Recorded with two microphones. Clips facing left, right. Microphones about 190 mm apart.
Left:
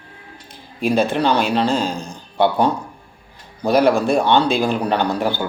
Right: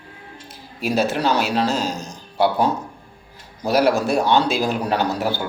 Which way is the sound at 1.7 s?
55° left (ahead or behind).